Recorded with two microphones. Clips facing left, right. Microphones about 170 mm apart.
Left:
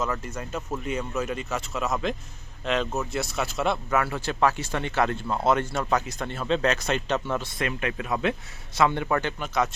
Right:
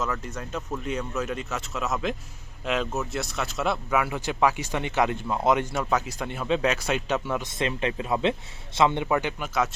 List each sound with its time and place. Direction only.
0.0 s speech: centre (ahead or behind); by 5.8 s 15° right (ahead or behind)
5.8 s speech: 5° right (ahead or behind)
7.5 s speech: 25° right (ahead or behind); by 9.6 s 10° right (ahead or behind)